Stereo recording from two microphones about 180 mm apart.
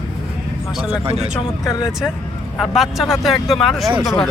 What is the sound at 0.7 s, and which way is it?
Speech, 5° right (ahead or behind).